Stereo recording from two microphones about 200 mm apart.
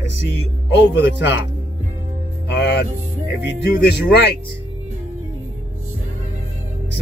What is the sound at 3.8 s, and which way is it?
Speech, 55° left (ahead or behind).